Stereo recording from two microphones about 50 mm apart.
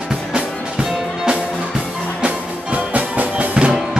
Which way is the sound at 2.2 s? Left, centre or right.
Right.